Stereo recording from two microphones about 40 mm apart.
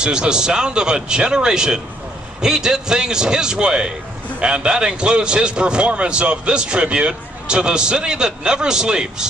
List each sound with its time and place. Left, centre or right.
0.0 s a man's voice: right